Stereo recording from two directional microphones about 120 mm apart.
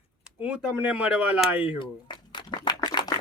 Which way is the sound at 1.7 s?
40° left (ahead or behind).